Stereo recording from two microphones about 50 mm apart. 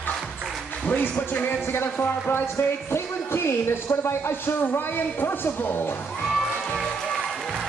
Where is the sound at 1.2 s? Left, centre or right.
Left.